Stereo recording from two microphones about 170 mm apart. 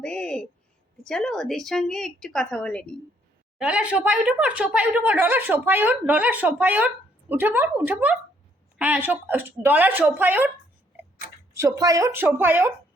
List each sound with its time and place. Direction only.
0.0 s a sound: 5° left (ahead or behind)
1.0 s a woman's voice: 5° left (ahead or behind)
3.6 s speech: 5° right (ahead or behind)
11.5 s speech: 20° right (ahead or behind)